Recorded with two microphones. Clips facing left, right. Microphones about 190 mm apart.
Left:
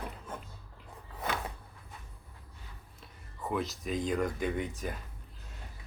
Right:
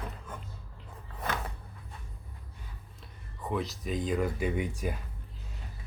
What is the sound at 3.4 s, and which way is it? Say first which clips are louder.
Speech: right 1 dB; centre (ahead or behind).